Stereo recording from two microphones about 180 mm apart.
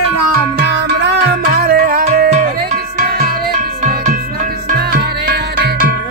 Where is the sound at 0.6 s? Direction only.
70° right (ahead or behind).